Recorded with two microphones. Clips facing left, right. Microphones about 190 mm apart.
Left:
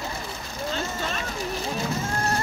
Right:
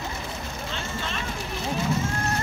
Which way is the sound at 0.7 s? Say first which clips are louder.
Left 5 dB; 40° left (ahead or behind).